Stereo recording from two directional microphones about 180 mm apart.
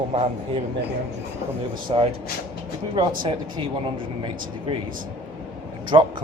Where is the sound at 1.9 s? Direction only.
30° right (ahead or behind).